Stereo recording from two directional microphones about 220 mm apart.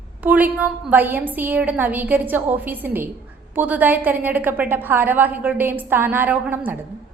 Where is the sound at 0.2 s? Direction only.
5° right (ahead or behind).